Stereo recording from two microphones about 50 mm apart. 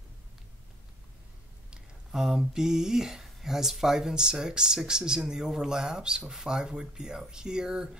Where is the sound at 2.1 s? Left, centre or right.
Centre.